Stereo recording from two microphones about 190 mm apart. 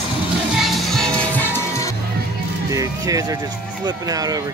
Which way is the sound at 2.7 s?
20° right (ahead or behind).